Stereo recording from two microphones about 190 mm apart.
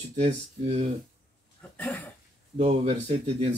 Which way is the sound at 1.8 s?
10° left (ahead or behind).